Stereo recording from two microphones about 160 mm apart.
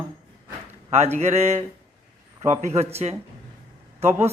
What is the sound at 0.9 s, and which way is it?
Speech, 45° right (ahead or behind).